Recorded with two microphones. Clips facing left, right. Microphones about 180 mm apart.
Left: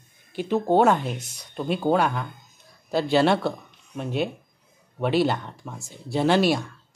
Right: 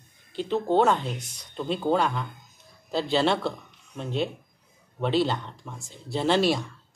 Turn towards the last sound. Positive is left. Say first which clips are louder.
# left 3 dB
turn(degrees=5)  # may be behind; listen again after turning